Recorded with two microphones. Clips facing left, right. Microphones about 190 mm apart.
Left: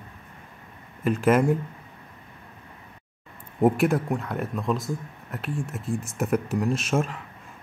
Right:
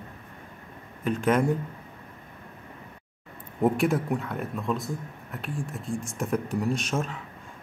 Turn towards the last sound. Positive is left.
turn(degrees=10)  # may be behind; listen again after turning